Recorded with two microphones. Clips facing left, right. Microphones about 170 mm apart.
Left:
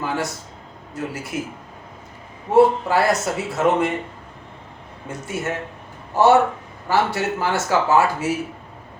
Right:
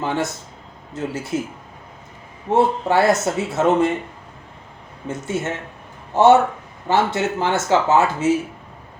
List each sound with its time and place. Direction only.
0.0 s speech: 25° right (ahead or behind)
2.5 s speech: 25° right (ahead or behind)
5.0 s speech: 25° right (ahead or behind)